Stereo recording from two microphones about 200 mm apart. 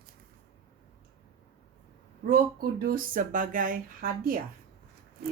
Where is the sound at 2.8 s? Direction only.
45° right (ahead or behind).